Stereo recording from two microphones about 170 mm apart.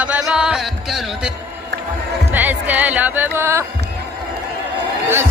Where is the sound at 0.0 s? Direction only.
5° right (ahead or behind).